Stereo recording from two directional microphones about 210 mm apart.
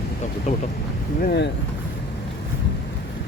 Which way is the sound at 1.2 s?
50° left (ahead or behind).